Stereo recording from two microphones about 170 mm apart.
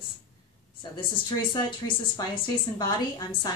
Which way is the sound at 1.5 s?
25° left (ahead or behind).